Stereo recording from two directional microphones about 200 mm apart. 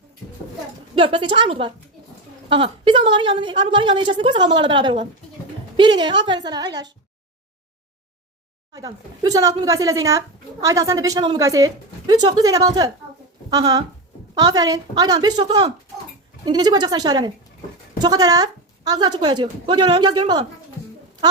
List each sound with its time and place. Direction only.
0.9 s a woman's voice: 25° right (ahead or behind)
8.7 s a woman's voice: 20° right (ahead or behind)